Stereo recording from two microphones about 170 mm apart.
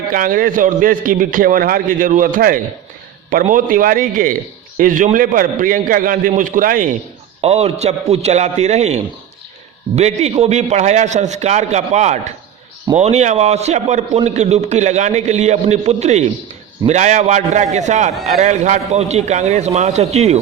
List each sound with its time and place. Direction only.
0.1 s a man's voice: 55° right (ahead or behind)
7.4 s a man's voice: 40° right (ahead or behind)